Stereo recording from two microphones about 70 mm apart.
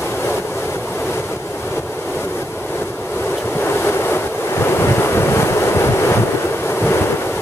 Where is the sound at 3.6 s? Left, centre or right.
Left.